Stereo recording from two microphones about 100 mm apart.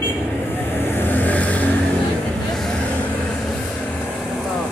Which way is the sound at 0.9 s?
20° left (ahead or behind).